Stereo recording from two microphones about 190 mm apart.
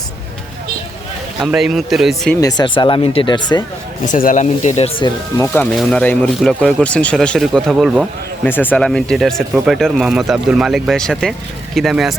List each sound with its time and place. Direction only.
1.4 s speech: 5° right (ahead or behind)
2.4 s speech: 20° left (ahead or behind)
4.0 s speech: 45° left (ahead or behind)
4.9 s speech: 25° left (ahead or behind)
5.5 s speech: 5° left (ahead or behind)
8.4 s speech: 10° left (ahead or behind)